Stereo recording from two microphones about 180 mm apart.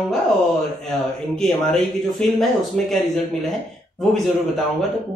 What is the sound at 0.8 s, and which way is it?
Speech, centre (ahead or behind).